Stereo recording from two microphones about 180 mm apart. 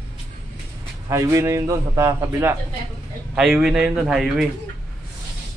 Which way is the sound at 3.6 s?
5° right (ahead or behind).